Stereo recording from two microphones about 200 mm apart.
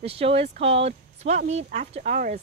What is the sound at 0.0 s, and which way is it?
Speech, 30° right (ahead or behind).